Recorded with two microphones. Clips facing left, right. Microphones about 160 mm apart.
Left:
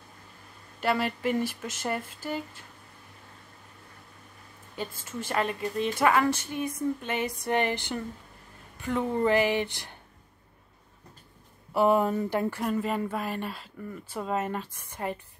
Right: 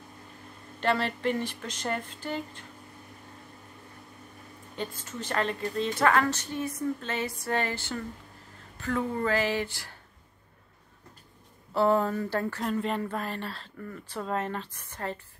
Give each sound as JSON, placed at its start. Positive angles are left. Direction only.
{"t": 0.7, "sound": "speech", "side_deg": 10}
{"t": 5.0, "sound": "speech", "side_deg": 10}
{"t": 11.7, "sound": "speech", "side_deg": 15}